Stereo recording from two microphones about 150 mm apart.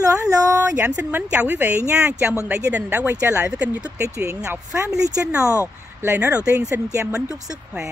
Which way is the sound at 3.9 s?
20° right (ahead or behind).